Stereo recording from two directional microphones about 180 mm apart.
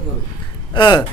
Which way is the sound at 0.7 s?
25° left (ahead or behind).